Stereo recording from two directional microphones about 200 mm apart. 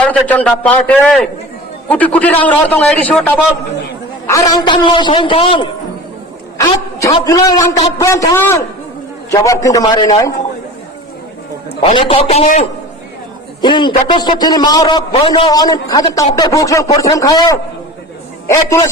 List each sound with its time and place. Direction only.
0.0 s a man's voice: 5° left (ahead or behind); by 5.6 s 25° left (ahead or behind)
7.0 s a man's voice: 20° left (ahead or behind)
11.9 s a man's voice: 25° left (ahead or behind)
13.6 s a man's voice: 25° left (ahead or behind)